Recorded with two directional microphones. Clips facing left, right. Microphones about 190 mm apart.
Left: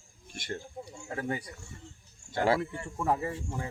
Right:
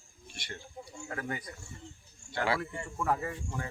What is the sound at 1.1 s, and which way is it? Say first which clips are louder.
Speech: left 4 dB; 25° left (ahead or behind).